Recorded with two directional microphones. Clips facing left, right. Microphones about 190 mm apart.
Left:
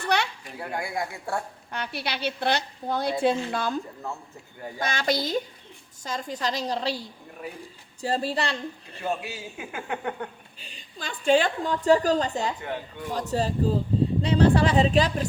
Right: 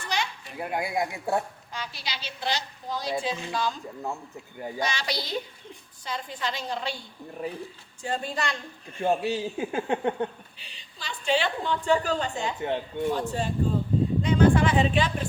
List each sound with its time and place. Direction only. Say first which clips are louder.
0.1 s children playing: left 4 dB; 65° left (ahead or behind)
0.6 s speech: right 2 dB; 20° right (ahead or behind)
1.7 s a woman's voice: left 5 dB; 60° left (ahead or behind)
4.8 s a woman's voice: left 5 dB; 50° left (ahead or behind); by 7.0 s 35° left (ahead or behind)
7.4 s a man's voice: right 4 dB; 30° right (ahead or behind)
8.0 s speech: left 3 dB; 35° left (ahead or behind)
9.0 s a man's voice: right 6 dB; 35° right (ahead or behind)
10.6 s a woman's voice: left 7 dB; 50° left (ahead or behind)
12.6 s speech: right 5 dB; 25° right (ahead or behind)
13.1 s speech: left 2 dB; 35° left (ahead or behind)